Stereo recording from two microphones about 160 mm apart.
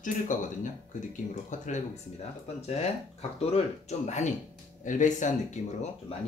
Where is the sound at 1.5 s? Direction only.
50° left (ahead or behind).